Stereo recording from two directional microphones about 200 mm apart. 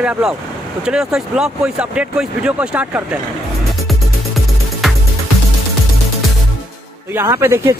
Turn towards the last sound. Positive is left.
turn(degrees=-15)  # may be behind; listen again after turning